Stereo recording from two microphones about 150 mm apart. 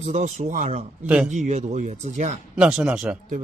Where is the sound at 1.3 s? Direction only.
50° right (ahead or behind).